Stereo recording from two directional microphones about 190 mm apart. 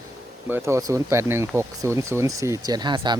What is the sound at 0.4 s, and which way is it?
Speech, 10° right (ahead or behind).